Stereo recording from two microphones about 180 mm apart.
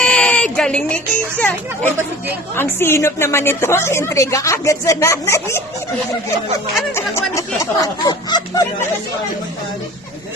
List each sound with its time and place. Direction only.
0.0 s a sound: 5° left (ahead or behind)
1.4 s a woman's voice: 10° left (ahead or behind)
6.9 s a woman's voice: 15° left (ahead or behind)